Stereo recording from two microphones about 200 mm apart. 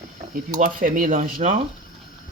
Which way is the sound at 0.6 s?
40° right (ahead or behind).